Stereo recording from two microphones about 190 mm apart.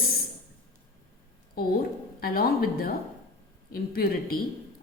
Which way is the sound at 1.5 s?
50° left (ahead or behind).